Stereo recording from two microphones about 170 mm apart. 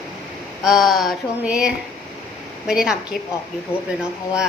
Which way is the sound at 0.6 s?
Centre (ahead or behind).